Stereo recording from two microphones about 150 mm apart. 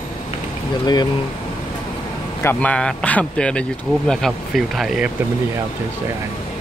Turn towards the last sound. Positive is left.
turn(degrees=0)  # may be behind; listen again after turning